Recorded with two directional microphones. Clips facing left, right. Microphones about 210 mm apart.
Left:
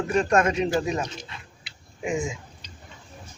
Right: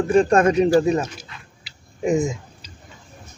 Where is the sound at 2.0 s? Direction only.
40° right (ahead or behind).